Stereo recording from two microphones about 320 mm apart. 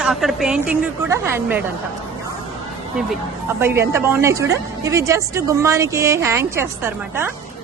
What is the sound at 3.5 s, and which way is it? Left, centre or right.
A woman's voice, centre.